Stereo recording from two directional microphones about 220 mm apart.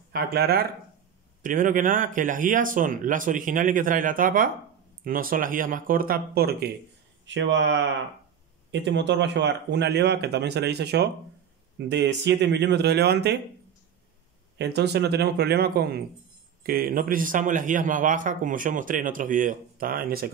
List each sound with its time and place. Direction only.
0.1 s a man's voice: 45° right (ahead or behind)
7.2 s speech: 55° right (ahead or behind)
14.6 s a man's voice: 50° right (ahead or behind)